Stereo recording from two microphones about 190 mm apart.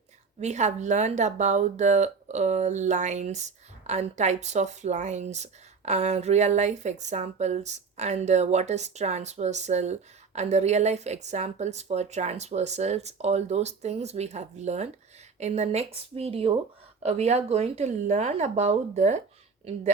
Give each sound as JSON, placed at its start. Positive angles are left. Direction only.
{"t": 0.3, "sound": "speech", "side_deg": -35}